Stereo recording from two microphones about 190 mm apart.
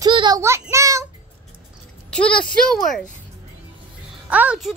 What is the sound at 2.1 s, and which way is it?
Speech, 5° left (ahead or behind).